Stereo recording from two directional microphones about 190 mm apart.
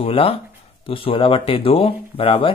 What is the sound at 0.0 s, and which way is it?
Speech, 30° left (ahead or behind).